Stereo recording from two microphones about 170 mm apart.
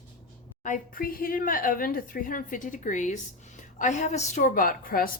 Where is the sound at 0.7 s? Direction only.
55° left (ahead or behind).